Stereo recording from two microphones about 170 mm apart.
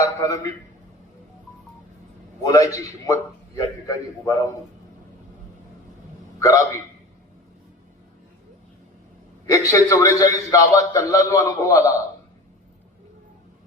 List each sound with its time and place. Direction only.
0.0 s a man's voice: 20° left (ahead or behind)
2.4 s a man's voice: 20° left (ahead or behind)
6.4 s a man's voice: 20° left (ahead or behind)
9.5 s a man's voice: 20° left (ahead or behind)